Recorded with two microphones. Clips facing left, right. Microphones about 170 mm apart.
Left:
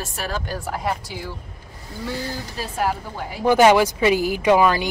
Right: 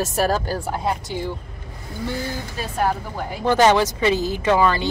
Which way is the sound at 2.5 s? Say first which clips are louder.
Right 2 dB; 5° left (ahead or behind).